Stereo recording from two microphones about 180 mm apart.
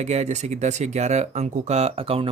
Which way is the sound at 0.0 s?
40° right (ahead or behind).